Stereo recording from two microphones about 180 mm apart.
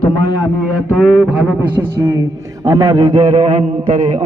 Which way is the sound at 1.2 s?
10° right (ahead or behind).